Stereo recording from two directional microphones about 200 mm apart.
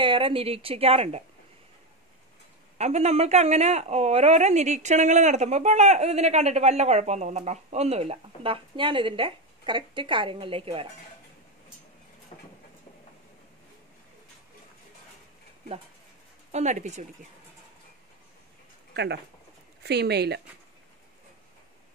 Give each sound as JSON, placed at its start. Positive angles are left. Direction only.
{"t": 0.0, "sound": "a woman's voice", "side_deg": -25}
{"t": 2.8, "sound": "speech", "side_deg": -35}
{"t": 12.3, "sound": "vehicle", "side_deg": 30}
{"t": 16.5, "sound": "speech", "side_deg": -35}
{"t": 19.8, "sound": "speech", "side_deg": -55}